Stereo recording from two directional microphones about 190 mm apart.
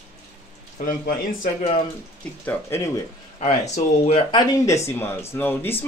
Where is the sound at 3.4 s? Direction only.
35° left (ahead or behind).